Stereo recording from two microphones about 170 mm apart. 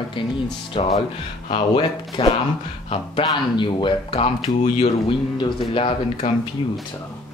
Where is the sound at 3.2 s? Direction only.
30° left (ahead or behind).